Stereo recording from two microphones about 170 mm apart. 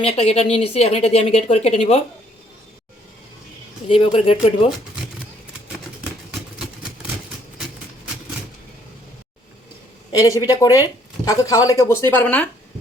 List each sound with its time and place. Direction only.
0.0 s a woman's voice: 35° left (ahead or behind)
3.8 s a woman's voice: 35° left (ahead or behind)
10.1 s speech: 20° left (ahead or behind)